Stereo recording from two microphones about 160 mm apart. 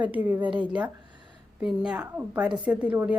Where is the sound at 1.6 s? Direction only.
5° right (ahead or behind).